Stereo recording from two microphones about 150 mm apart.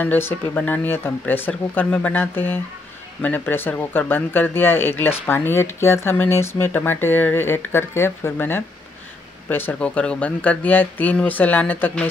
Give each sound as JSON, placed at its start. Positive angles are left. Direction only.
{"t": 0.0, "sound": "speech", "side_deg": 15}